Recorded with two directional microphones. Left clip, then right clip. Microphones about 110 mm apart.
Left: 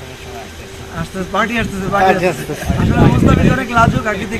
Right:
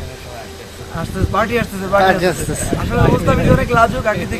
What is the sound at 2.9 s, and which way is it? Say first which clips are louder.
Speech: left 1 dB; 30° right (ahead or behind).